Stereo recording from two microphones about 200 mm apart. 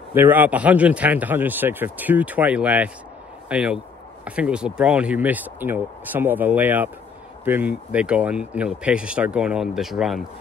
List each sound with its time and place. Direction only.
0.1 s speech: 10° right (ahead or behind)